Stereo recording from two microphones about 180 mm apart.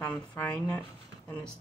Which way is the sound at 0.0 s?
5° left (ahead or behind).